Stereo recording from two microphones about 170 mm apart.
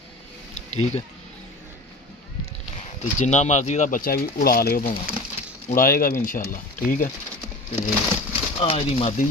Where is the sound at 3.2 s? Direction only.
45° left (ahead or behind).